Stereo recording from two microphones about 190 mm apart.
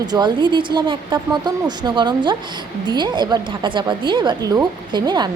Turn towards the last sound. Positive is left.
turn(degrees=-20)  # may be behind; listen again after turning